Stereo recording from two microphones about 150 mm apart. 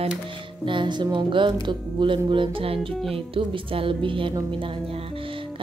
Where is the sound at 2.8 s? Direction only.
Centre (ahead or behind).